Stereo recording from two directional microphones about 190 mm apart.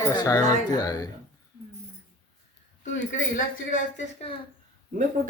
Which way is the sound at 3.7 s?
35° left (ahead or behind).